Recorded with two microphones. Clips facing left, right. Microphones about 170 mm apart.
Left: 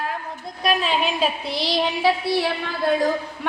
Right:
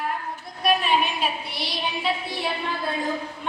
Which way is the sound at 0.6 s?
90° left.